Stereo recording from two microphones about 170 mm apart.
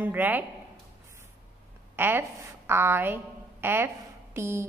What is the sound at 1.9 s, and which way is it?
A woman's voice, 10° right (ahead or behind).